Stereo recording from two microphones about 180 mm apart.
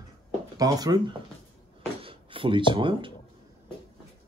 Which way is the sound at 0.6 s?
20° right (ahead or behind).